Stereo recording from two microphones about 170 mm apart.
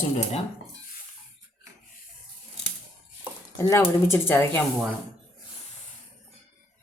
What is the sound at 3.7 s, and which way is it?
Speech, 15° left (ahead or behind).